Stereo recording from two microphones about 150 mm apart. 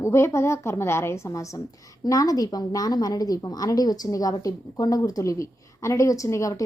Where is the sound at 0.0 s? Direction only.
20° left (ahead or behind).